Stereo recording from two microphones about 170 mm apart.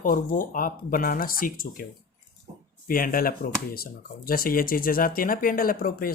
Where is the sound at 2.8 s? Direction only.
55° left (ahead or behind).